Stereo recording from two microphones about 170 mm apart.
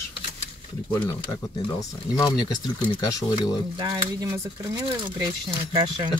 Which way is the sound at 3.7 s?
25° right (ahead or behind).